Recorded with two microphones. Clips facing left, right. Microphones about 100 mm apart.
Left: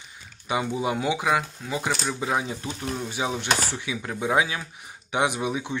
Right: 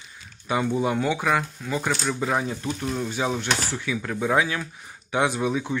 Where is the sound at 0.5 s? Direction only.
15° left (ahead or behind).